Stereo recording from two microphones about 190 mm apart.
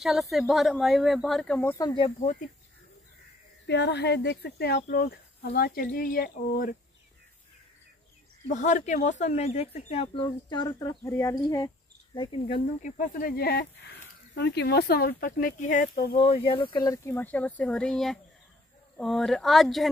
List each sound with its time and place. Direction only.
0.0 s speech: centre (ahead or behind); by 2.1 s 20° left (ahead or behind)
3.6 s speech: 65° left (ahead or behind)
8.5 s speech: 40° left (ahead or behind)
12.8 s speech: 45° left (ahead or behind)
16.2 s speech: 25° left (ahead or behind); by 19.9 s centre (ahead or behind)